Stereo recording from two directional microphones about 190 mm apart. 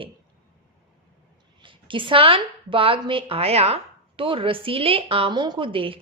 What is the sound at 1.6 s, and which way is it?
A woman's voice, 25° right (ahead or behind).